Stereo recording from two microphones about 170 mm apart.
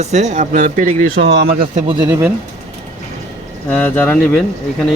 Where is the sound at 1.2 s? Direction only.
85° right; by 1.7 s 65° right (ahead or behind).